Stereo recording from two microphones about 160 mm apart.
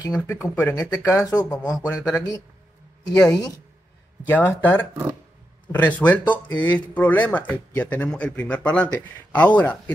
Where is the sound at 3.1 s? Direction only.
25° left (ahead or behind).